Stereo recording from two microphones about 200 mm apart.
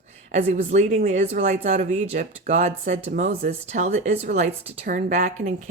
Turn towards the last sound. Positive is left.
turn(degrees=-35)  # may be behind; listen again after turning